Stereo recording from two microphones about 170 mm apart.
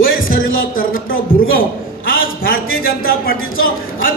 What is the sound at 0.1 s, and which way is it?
Music, 60° left (ahead or behind).